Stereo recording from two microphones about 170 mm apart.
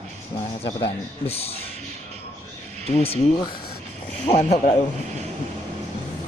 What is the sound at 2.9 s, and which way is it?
A man's voice, 40° left (ahead or behind).